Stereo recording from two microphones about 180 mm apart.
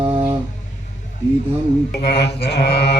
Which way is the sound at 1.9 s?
70° left (ahead or behind).